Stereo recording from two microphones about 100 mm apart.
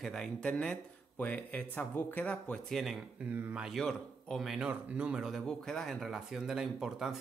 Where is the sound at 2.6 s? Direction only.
Centre (ahead or behind).